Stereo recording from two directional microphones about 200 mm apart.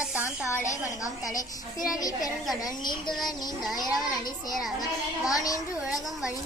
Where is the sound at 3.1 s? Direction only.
Centre (ahead or behind).